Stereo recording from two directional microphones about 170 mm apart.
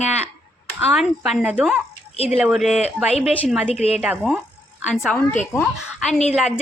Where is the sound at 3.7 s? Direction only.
40° left (ahead or behind).